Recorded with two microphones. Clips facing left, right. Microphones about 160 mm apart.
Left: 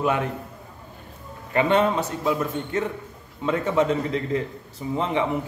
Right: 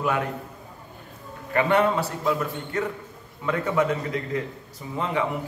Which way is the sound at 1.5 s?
20° left (ahead or behind).